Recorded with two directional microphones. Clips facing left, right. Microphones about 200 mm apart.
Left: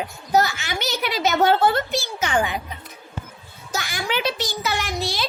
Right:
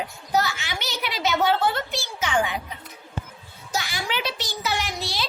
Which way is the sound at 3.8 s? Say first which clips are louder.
Left 3 dB; 50° left (ahead or behind).